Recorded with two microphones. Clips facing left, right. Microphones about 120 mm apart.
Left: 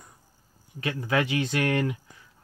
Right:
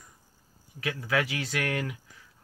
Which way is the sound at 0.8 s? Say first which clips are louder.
Left 3 dB; 25° left (ahead or behind).